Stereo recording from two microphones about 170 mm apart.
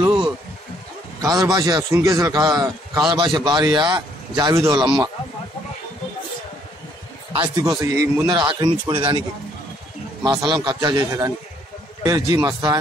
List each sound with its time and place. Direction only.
0.0 s a sound: 30° right (ahead or behind)
1.2 s a man's voice: 20° right (ahead or behind)
7.8 s a man's voice: 15° right (ahead or behind)
10.2 s a man's voice: 25° right (ahead or behind)